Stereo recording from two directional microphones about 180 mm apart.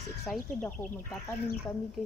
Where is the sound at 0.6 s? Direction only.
10° left (ahead or behind).